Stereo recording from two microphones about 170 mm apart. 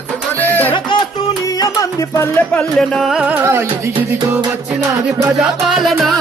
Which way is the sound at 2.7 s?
Centre (ahead or behind).